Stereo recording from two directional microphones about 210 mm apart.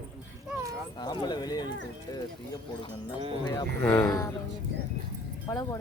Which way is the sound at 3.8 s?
10° left (ahead or behind).